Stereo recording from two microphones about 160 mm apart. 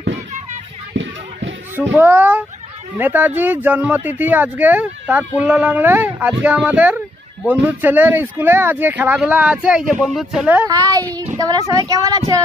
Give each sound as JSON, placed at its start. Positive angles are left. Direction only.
{"t": 1.8, "sound": "speech", "side_deg": -10}
{"t": 10.7, "sound": "speech", "side_deg": -25}